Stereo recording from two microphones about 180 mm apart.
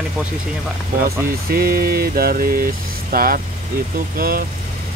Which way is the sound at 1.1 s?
55° right (ahead or behind).